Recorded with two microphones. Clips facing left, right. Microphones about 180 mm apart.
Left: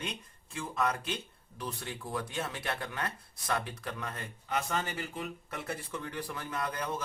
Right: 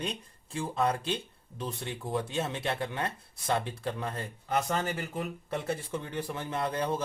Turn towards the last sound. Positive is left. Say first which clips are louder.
# right 5 dB
turn(degrees=-30)  # may be behind; listen again after turning